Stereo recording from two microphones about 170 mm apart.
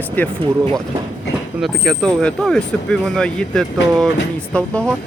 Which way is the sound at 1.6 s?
Centre (ahead or behind).